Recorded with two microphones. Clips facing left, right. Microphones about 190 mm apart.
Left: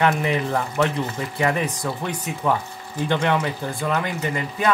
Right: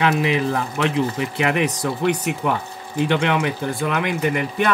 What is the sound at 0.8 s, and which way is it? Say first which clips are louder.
Speech: right 4 dB; 80° right.